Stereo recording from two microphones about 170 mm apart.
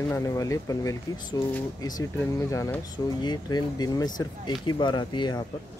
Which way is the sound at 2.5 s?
15° left (ahead or behind).